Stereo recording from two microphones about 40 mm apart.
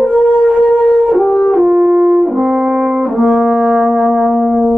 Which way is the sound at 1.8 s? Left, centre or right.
Centre.